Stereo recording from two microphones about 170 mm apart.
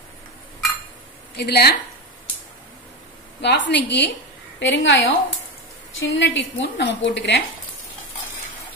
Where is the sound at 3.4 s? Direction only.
90° left.